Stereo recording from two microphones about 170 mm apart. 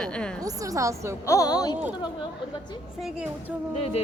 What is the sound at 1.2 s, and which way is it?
Speech, 20° left (ahead or behind).